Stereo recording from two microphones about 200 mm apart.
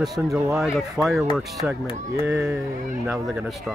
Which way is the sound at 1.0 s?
15° right (ahead or behind).